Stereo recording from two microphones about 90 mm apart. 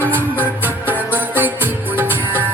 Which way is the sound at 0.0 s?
25° right (ahead or behind).